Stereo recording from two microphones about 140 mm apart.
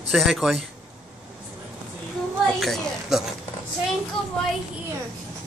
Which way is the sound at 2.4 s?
Centre (ahead or behind).